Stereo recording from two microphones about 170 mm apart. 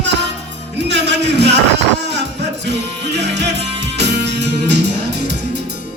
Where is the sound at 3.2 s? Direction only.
90° right.